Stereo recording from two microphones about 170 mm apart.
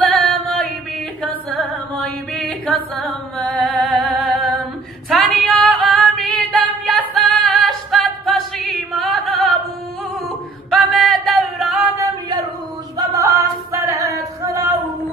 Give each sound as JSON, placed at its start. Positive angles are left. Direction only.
{"t": 0.1, "sound": "music", "side_deg": 5}
{"t": 5.1, "sound": "female singing", "side_deg": 0}
{"t": 7.2, "sound": "a capella", "side_deg": 0}
{"t": 10.7, "sound": "music", "side_deg": 0}
{"t": 12.9, "sound": "singing", "side_deg": -20}